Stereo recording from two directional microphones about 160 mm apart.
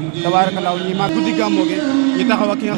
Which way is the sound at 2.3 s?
15° right (ahead or behind).